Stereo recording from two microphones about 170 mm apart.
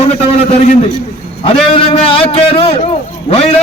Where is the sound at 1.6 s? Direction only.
30° left (ahead or behind).